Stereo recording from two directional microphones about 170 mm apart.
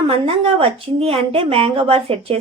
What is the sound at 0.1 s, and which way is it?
A woman's voice, 35° right (ahead or behind).